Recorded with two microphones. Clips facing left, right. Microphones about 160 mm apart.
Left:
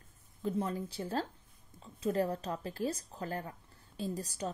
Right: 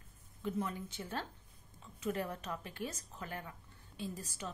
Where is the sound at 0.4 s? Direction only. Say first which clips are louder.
Left 4 dB; 30° left (ahead or behind).